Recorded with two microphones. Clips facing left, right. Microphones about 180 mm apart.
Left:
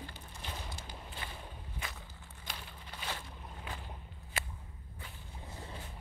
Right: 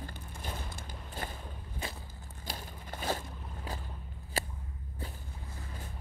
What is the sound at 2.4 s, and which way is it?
Crushing, 40° right (ahead or behind).